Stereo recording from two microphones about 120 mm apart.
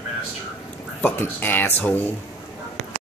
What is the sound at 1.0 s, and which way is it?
Speech, 15° left (ahead or behind).